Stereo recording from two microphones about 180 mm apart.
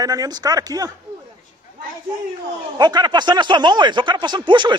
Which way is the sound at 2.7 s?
25° right (ahead or behind).